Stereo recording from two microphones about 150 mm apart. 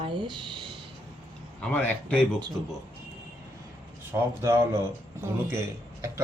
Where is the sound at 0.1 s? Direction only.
30° right (ahead or behind).